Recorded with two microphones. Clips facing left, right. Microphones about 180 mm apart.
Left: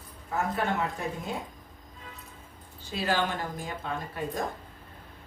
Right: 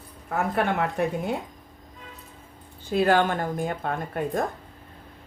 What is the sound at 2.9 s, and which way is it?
Speech, 55° right (ahead or behind).